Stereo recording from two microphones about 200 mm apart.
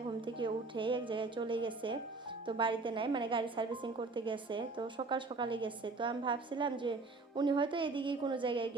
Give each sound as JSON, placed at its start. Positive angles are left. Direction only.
{"t": 0.3, "sound": "a woman's voice", "side_deg": -25}